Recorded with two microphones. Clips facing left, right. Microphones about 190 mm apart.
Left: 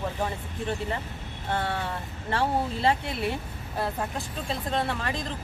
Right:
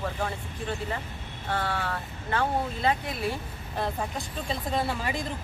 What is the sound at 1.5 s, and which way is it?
Speech, 25° left (ahead or behind).